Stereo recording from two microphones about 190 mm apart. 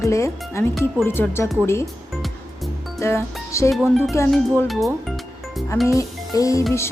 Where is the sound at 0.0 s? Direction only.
15° left (ahead or behind).